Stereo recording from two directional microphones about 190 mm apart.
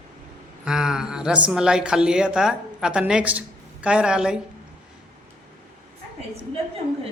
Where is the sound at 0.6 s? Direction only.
5° right (ahead or behind).